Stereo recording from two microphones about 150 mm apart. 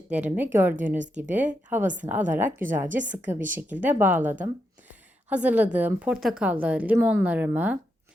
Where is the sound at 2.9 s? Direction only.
55° right (ahead or behind).